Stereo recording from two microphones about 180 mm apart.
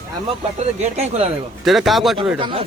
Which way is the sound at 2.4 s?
30° right (ahead or behind).